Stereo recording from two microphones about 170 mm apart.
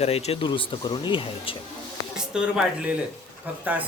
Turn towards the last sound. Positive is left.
turn(degrees=-10)  # may be behind; listen again after turning